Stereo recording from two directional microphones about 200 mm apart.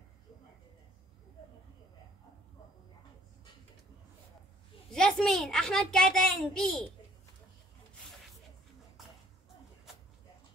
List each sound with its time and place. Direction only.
4.9 s a woman's voice: 5° left (ahead or behind)